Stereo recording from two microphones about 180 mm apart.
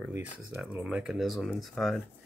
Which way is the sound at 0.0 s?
10° right (ahead or behind).